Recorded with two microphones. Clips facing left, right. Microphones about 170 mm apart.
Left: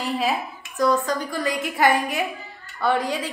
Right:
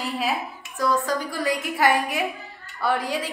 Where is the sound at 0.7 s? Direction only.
5° right (ahead or behind).